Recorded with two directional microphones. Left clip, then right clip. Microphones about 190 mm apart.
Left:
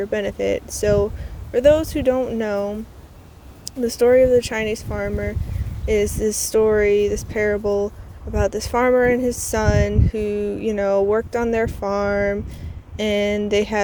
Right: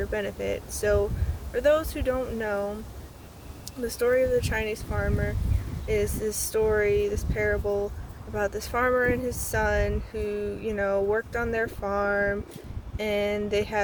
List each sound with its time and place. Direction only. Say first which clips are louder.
0.0 s speech: left 8 dB; 35° left (ahead or behind)
3.8 s speech: left 9 dB; 30° left (ahead or behind)